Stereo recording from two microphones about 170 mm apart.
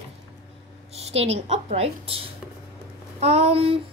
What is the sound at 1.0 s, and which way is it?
A woman's voice, 35° right (ahead or behind).